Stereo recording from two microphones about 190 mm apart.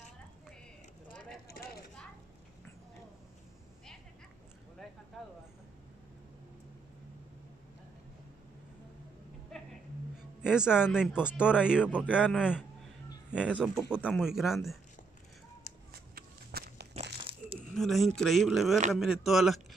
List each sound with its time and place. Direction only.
10.1 s music: 5° right (ahead or behind)
11.3 s speech: 5° right (ahead or behind)
15.9 s walk: 55° right (ahead or behind)
16.9 s crumpling: 30° right (ahead or behind)
17.7 s speech: centre (ahead or behind)